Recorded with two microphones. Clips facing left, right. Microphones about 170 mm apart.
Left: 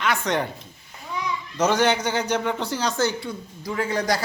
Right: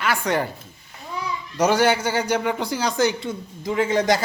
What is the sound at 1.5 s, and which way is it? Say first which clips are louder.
Speech: right 2 dB; 10° right (ahead or behind).